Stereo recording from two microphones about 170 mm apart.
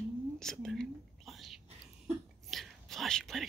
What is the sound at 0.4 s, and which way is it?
Whispering, 5° left (ahead or behind).